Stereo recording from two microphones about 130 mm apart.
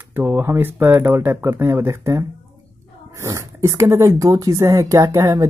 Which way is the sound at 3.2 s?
25° right (ahead or behind).